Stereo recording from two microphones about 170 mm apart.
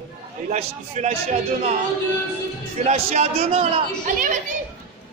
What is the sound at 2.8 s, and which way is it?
Speech, 40° right (ahead or behind).